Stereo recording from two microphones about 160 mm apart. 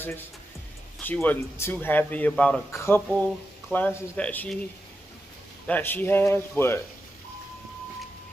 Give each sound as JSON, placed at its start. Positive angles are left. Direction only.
{"t": 0.9, "sound": "speech", "side_deg": 5}
{"t": 3.1, "sound": "speech", "side_deg": 5}
{"t": 5.7, "sound": "speech", "side_deg": 10}